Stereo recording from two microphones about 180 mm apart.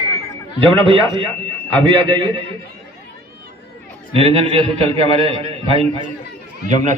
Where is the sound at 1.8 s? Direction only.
25° right (ahead or behind).